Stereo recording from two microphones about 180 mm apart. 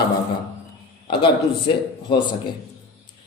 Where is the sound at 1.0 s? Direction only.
25° left (ahead or behind).